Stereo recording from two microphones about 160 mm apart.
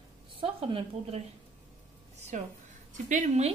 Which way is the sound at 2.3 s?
45° right (ahead or behind).